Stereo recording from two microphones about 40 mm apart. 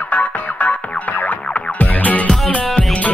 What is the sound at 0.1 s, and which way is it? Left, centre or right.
Music, left.